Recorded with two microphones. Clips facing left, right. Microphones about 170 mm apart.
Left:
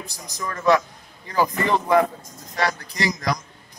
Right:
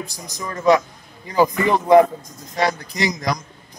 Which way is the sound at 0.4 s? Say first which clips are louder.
Right 3 dB; 15° right (ahead or behind).